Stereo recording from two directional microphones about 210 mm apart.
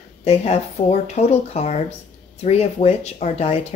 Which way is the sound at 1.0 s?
30° left (ahead or behind).